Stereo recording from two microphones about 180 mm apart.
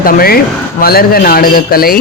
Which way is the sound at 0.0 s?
55° left (ahead or behind).